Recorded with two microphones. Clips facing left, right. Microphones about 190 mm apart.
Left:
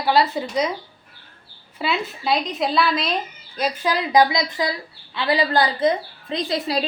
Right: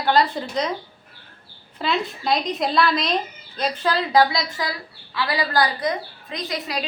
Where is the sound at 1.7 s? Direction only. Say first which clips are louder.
Even; 5° left (ahead or behind).